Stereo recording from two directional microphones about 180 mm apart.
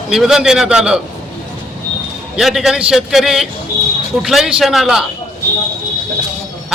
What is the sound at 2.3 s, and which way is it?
A man's voice, centre (ahead or behind).